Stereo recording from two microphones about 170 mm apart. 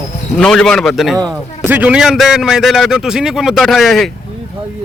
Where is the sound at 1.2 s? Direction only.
20° right (ahead or behind).